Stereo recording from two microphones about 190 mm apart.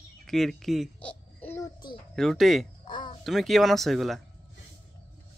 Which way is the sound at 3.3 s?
Centre (ahead or behind).